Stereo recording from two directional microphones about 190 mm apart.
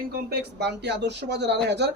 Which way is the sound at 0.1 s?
60° right (ahead or behind).